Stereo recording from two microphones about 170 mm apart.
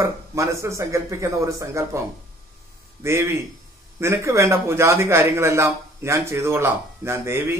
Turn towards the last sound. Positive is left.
turn(degrees=-15)  # may be behind; listen again after turning